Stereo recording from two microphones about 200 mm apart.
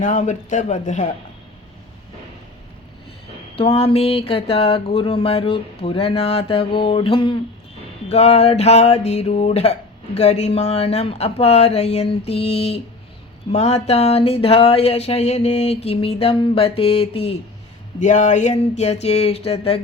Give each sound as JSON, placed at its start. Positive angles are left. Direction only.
{"t": 0.0, "sound": "speech", "side_deg": 35}
{"t": 3.5, "sound": "speech", "side_deg": 30}